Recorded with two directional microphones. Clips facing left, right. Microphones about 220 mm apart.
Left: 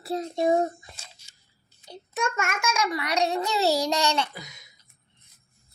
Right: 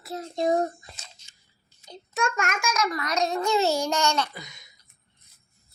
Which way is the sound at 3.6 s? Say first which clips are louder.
Left 1 dB; 35° left (ahead or behind).